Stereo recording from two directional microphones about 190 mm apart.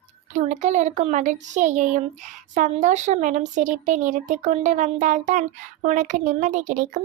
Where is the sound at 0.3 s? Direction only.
40° right (ahead or behind).